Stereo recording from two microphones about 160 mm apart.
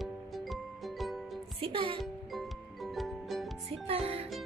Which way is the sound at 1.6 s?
30° right (ahead or behind).